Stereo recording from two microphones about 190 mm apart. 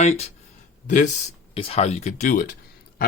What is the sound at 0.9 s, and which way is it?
Speech, 40° left (ahead or behind).